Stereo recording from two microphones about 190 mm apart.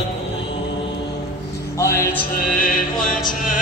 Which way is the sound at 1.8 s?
15° left (ahead or behind).